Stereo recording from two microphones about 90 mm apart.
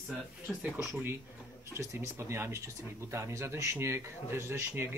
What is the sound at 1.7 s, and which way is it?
Speech, 30° right (ahead or behind).